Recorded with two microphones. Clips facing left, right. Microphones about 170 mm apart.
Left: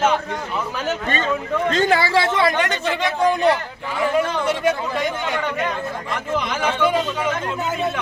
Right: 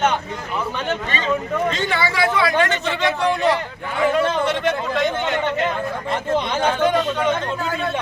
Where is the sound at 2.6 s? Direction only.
15° left (ahead or behind).